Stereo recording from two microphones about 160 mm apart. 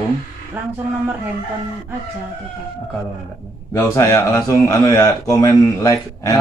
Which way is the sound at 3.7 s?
20° left (ahead or behind).